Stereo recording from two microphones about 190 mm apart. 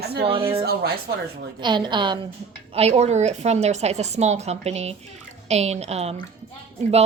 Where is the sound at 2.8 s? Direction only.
35° right (ahead or behind).